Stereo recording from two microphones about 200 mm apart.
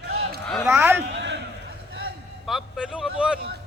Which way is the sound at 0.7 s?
10° right (ahead or behind).